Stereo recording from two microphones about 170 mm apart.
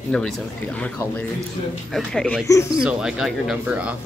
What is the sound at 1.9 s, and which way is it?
Speech, 5° left (ahead or behind).